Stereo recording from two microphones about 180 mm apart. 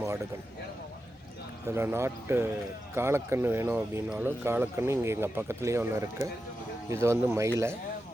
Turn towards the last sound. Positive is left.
turn(degrees=-15)  # may be behind; listen again after turning